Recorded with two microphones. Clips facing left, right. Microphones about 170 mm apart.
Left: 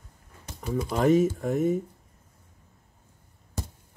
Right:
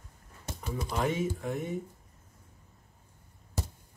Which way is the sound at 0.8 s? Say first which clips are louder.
Left 9 dB; 40° left (ahead or behind).